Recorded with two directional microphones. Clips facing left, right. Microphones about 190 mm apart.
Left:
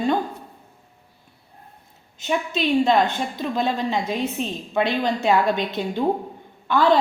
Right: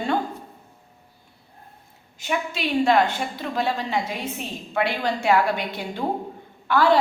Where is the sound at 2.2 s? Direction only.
20° left (ahead or behind).